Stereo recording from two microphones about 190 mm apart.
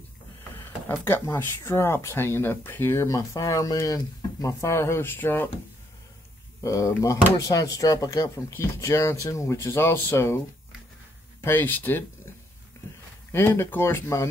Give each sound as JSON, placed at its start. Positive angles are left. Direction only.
{"t": 0.4, "sound": "speech", "side_deg": 10}
{"t": 6.6, "sound": "speech", "side_deg": 15}
{"t": 11.4, "sound": "speech", "side_deg": 10}
{"t": 13.3, "sound": "speech", "side_deg": 10}